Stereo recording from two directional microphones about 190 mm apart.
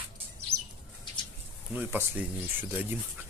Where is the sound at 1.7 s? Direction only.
10° right (ahead or behind).